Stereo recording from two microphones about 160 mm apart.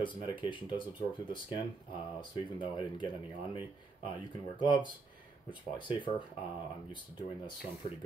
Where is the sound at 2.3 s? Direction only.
30° left (ahead or behind).